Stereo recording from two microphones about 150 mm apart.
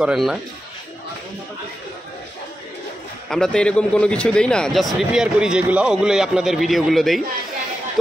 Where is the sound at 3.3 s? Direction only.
5° left (ahead or behind).